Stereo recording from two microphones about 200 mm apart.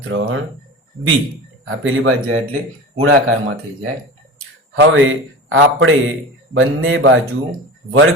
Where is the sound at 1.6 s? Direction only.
75° right (ahead or behind).